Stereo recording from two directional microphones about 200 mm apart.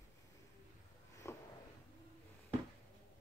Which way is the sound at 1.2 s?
15° left (ahead or behind).